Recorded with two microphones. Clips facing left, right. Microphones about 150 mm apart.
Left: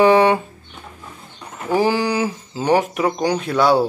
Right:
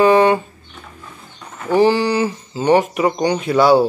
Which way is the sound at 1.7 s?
10° left (ahead or behind).